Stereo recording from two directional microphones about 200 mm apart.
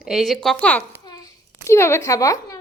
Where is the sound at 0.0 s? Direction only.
Centre (ahead or behind).